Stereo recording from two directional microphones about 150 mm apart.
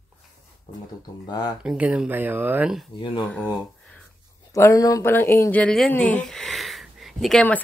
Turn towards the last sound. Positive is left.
turn(degrees=5)  # may be behind; listen again after turning